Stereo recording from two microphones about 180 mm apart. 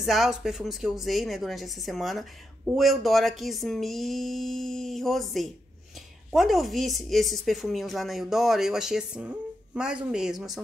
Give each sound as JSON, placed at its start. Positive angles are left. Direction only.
{"t": 0.0, "sound": "a woman's voice", "side_deg": 0}